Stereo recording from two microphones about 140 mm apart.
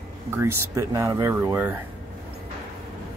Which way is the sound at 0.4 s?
20° right (ahead or behind).